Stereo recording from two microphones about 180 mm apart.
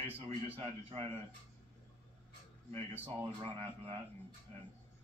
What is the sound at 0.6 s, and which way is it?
Speech, 30° right (ahead or behind).